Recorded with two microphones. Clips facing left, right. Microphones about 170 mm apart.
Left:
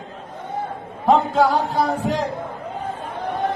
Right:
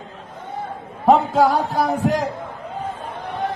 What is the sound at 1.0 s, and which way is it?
Music, 10° right (ahead or behind).